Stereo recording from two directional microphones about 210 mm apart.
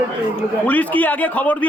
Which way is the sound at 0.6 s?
10° left (ahead or behind).